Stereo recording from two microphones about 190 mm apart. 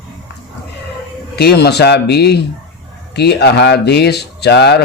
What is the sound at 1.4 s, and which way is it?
Speech, 60° left (ahead or behind).